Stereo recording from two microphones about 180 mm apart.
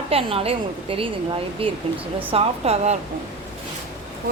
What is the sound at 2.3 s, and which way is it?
Speech, 35° right (ahead or behind).